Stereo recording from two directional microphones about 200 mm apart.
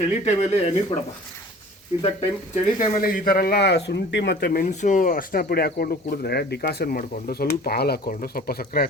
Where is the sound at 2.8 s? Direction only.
45° left (ahead or behind).